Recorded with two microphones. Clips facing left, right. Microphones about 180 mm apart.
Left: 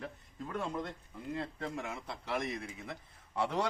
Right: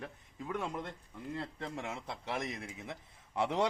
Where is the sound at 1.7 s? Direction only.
25° right (ahead or behind).